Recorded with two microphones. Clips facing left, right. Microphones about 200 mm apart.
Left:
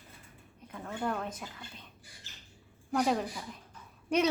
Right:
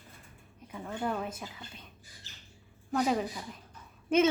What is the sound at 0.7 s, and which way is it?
Speech, 5° right (ahead or behind).